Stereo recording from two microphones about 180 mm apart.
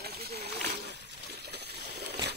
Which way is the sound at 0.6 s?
65° right (ahead or behind).